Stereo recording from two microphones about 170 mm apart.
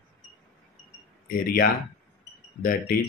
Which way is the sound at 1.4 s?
60° left (ahead or behind).